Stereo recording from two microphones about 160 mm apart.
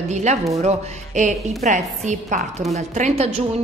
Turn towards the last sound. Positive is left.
turn(degrees=-45)  # may be behind; listen again after turning